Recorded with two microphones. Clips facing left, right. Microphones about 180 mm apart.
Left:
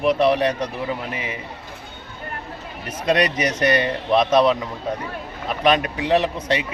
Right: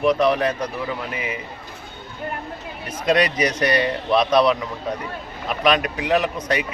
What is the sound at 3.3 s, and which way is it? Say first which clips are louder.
Speech: even; 30° right (ahead or behind).